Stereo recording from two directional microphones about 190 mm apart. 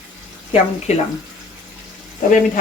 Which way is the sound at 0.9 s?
35° left (ahead or behind).